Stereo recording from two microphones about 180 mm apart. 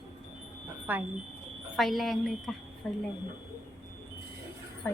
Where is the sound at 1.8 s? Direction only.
Centre (ahead or behind).